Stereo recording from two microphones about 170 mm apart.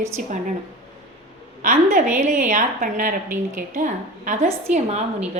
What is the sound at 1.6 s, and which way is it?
A woman's voice, 50° right (ahead or behind).